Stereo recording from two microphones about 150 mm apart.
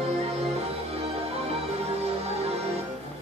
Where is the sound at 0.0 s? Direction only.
45° right (ahead or behind).